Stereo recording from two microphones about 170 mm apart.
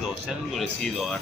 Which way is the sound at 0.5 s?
Centre (ahead or behind).